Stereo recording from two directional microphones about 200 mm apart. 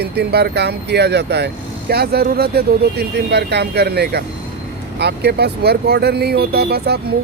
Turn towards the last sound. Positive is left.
turn(degrees=-55)  # may be behind; listen again after turning